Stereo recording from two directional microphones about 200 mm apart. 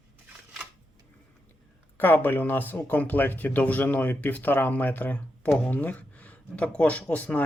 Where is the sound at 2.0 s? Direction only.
10° left (ahead or behind).